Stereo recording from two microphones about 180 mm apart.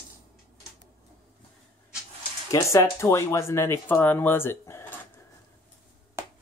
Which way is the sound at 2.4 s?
15° left (ahead or behind).